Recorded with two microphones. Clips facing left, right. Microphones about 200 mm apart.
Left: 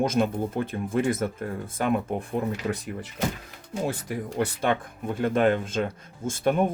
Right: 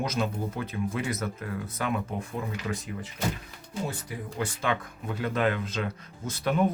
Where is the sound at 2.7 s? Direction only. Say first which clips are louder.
Left 2 dB; 65° left (ahead or behind).